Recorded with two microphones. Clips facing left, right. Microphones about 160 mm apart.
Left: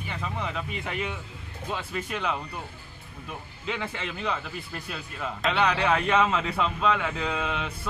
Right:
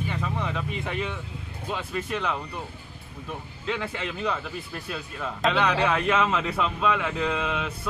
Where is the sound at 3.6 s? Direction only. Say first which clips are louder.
Right 2 dB; centre (ahead or behind).